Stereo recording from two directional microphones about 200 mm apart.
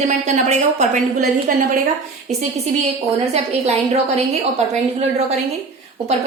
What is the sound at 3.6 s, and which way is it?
A woman's voice, 30° right (ahead or behind).